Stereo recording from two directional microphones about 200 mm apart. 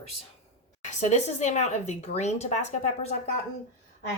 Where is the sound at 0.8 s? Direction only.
35° left (ahead or behind).